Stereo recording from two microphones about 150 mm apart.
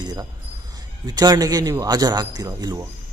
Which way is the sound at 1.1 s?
25° right (ahead or behind).